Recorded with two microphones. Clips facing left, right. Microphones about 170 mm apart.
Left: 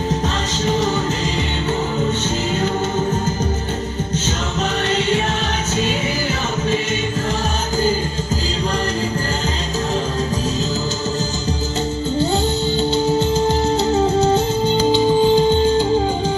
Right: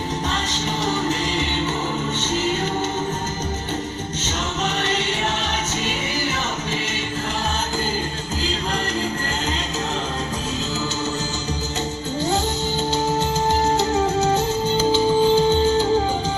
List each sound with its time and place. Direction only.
14.7 s music: 20° left (ahead or behind)